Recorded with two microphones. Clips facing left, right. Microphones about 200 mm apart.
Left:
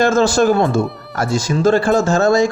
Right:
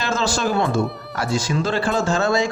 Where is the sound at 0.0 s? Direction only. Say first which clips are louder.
Left 9 dB; 50° left (ahead or behind).